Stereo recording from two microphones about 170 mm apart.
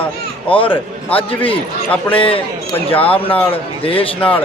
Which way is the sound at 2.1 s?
30° left (ahead or behind).